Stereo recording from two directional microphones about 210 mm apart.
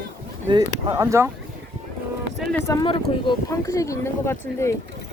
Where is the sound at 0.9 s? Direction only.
15° right (ahead or behind).